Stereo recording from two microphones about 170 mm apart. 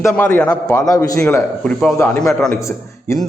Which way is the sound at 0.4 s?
20° left (ahead or behind).